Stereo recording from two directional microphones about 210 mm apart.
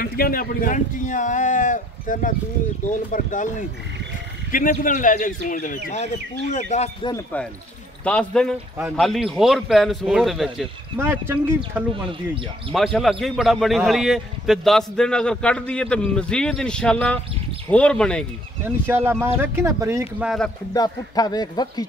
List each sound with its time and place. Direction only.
0.0 s speech: 45° left (ahead or behind)
8.0 s a man's voice: 5° left (ahead or behind)
11.0 s speech: 10° right (ahead or behind)
12.7 s a man's voice: centre (ahead or behind)
18.6 s speech: 10° right (ahead or behind)
20.2 s a man's voice: 5° left (ahead or behind)
20.7 s speech: 20° left (ahead or behind)